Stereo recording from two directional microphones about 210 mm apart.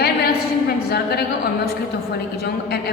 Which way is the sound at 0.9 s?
50° left (ahead or behind).